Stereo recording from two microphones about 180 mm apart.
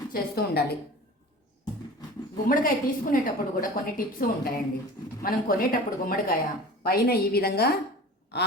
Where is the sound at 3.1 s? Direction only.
50° left (ahead or behind).